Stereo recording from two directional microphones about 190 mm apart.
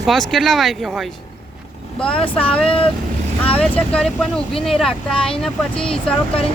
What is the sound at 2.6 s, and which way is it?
Speech, 30° left (ahead or behind).